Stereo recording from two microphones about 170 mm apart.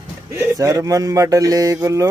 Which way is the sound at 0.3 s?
15° right (ahead or behind).